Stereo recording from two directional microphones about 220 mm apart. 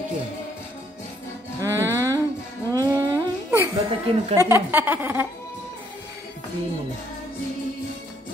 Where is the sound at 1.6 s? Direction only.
15° right (ahead or behind).